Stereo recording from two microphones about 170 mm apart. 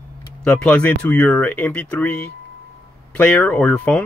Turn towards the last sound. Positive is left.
turn(degrees=10)  # may be behind; listen again after turning